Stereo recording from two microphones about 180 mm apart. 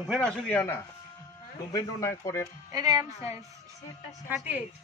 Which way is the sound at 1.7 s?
20° left (ahead or behind).